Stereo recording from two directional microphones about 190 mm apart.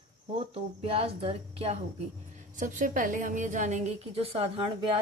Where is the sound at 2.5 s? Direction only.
45° right (ahead or behind).